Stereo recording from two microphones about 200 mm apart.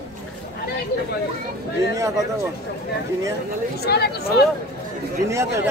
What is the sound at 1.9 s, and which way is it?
Speech, 15° right (ahead or behind).